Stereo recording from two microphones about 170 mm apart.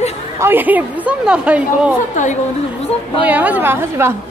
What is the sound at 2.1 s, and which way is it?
Speech, 45° left (ahead or behind).